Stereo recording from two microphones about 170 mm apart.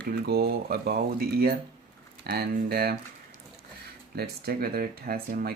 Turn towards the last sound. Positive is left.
turn(degrees=-60)  # may be behind; listen again after turning